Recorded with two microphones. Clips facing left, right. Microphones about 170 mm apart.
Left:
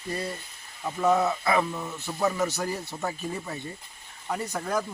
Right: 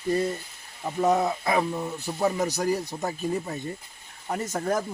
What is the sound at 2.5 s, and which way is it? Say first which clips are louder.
Speech: right 5 dB; 15° right (ahead or behind).